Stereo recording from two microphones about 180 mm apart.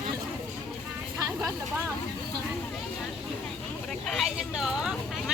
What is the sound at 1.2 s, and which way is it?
Vehicle, 15° right (ahead or behind).